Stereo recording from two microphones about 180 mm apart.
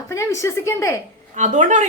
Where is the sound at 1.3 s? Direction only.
40° right (ahead or behind).